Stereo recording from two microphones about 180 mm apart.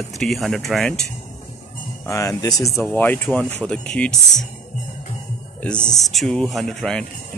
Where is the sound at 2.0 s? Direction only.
20° left (ahead or behind).